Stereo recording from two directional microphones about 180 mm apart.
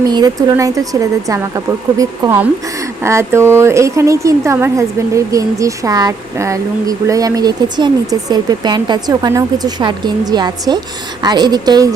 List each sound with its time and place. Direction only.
0.0 s speech: 25° right (ahead or behind)